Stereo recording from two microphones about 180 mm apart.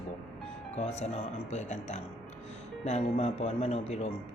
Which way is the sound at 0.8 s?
40° left (ahead or behind).